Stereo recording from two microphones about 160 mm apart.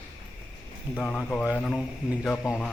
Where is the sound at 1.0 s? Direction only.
5° left (ahead or behind).